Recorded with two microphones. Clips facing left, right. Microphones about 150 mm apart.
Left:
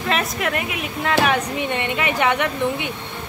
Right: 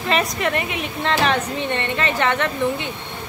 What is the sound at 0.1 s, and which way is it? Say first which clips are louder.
Speech: right 2 dB; centre (ahead or behind).